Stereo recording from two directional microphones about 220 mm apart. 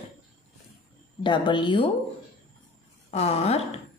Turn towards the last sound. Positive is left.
turn(degrees=30)  # may be behind; listen again after turning